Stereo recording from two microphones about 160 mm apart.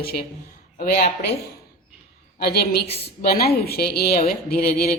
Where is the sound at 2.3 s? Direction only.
75° left (ahead or behind).